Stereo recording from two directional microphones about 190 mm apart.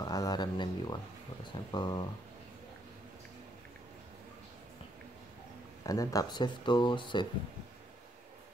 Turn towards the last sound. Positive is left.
turn(degrees=25)  # may be behind; listen again after turning